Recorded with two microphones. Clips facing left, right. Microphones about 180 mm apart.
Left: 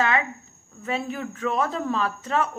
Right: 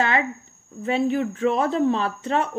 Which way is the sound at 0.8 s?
30° right (ahead or behind).